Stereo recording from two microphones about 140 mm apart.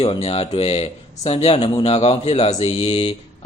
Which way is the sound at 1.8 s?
45° left (ahead or behind).